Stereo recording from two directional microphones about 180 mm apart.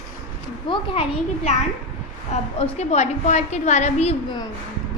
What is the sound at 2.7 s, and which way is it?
A woman's voice, 40° left (ahead or behind).